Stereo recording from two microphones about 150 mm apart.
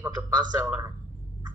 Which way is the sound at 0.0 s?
25° right (ahead or behind).